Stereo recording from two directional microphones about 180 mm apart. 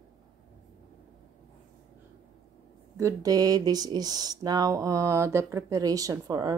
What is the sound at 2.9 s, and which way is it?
Speech, 20° right (ahead or behind).